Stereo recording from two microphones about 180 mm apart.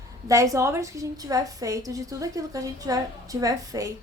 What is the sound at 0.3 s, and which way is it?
A woman's voice, 15° right (ahead or behind).